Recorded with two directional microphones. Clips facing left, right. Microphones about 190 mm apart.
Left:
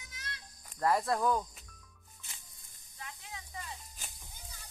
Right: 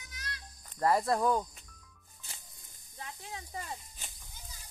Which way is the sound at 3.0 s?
35° right (ahead or behind).